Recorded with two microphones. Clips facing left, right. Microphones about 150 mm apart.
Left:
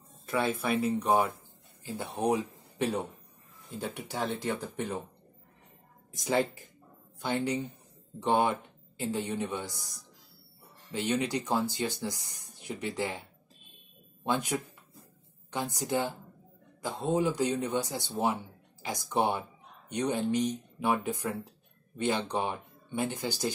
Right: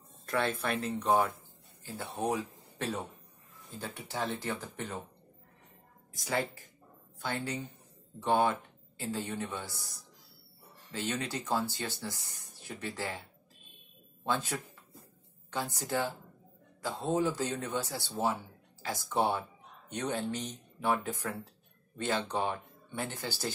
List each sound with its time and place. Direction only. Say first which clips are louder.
0.3 s speech: left 3 dB; 5° left (ahead or behind)
6.1 s speech: left 5 dB; 20° left (ahead or behind)
14.2 s speech: left 3 dB; 15° left (ahead or behind)